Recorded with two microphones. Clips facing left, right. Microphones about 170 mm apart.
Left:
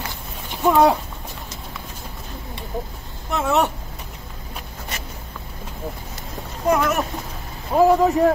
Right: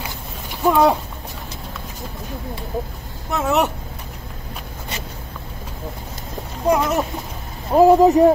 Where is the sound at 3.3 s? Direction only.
Centre (ahead or behind).